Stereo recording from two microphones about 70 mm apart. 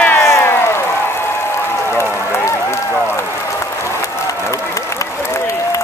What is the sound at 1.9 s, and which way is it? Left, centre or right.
Run, left.